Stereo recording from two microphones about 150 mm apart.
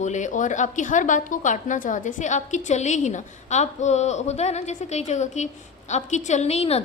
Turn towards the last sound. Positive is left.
turn(degrees=45)  # may be behind; listen again after turning